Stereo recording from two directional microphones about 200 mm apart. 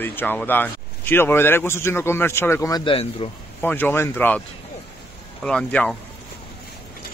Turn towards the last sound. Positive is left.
turn(degrees=5)  # may be behind; listen again after turning